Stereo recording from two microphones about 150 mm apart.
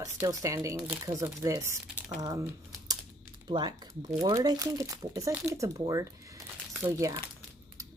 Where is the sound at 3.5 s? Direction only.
30° right (ahead or behind).